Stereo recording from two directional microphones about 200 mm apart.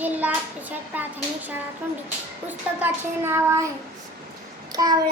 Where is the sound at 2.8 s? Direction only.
10° right (ahead or behind).